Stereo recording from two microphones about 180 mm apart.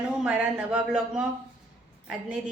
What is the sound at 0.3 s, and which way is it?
A woman's voice, 5° right (ahead or behind).